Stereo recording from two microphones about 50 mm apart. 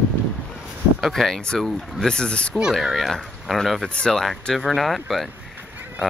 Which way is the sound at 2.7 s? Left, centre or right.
Centre.